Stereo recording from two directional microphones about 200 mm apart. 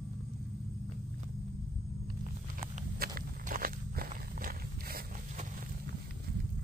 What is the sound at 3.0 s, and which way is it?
Walk, 45° right (ahead or behind).